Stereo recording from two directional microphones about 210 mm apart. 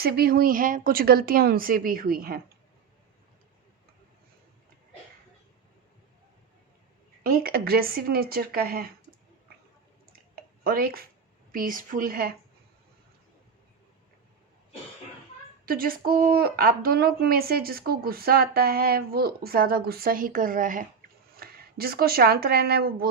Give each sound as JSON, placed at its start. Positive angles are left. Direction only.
{"t": 0.0, "sound": "speech", "side_deg": -45}
{"t": 7.3, "sound": "speech", "side_deg": -45}
{"t": 10.6, "sound": "speech", "side_deg": -45}
{"t": 15.6, "sound": "speech", "side_deg": -45}